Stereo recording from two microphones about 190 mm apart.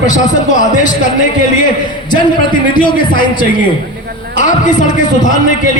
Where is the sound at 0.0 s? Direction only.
40° left (ahead or behind).